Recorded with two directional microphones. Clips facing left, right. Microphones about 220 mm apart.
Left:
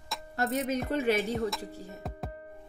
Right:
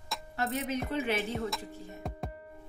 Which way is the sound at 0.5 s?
45° left (ahead or behind).